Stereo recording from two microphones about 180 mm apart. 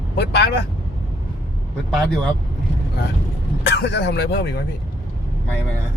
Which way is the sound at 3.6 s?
65° left (ahead or behind).